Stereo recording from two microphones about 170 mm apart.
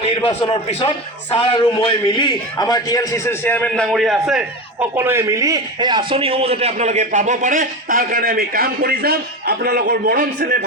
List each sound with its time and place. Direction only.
0.1 s a man's voice: 35° left (ahead or behind); by 10.6 s 70° right (ahead or behind)